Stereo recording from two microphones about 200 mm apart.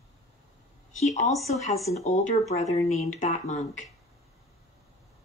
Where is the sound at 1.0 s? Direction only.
35° left (ahead or behind).